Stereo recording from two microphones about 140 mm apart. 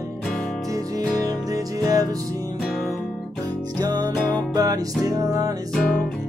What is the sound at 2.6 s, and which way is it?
Music, centre (ahead or behind).